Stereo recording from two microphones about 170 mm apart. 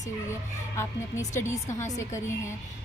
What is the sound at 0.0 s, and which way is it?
Speech, 15° left (ahead or behind).